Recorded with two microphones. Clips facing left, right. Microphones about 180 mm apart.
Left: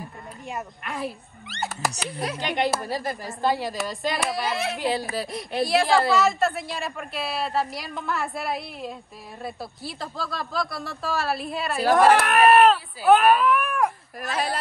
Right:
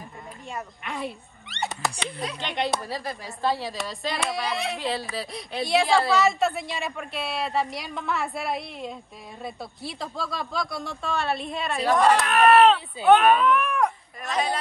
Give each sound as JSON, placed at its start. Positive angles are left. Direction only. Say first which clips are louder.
{"t": 0.8, "sound": "speech", "louder": "left 1 dB", "side_deg": 0}
{"t": 12.0, "sound": "speech", "louder": "left 3 dB", "side_deg": 60}
{"t": 12.3, "sound": "speech", "louder": "left 1 dB", "side_deg": 0}